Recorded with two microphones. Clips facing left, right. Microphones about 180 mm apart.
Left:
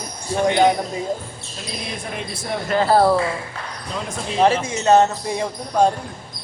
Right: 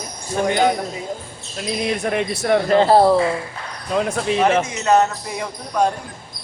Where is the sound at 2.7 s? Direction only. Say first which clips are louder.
Right 2 dB; 30° right (ahead or behind).